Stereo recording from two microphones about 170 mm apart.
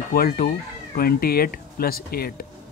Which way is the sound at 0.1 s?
60° left (ahead or behind).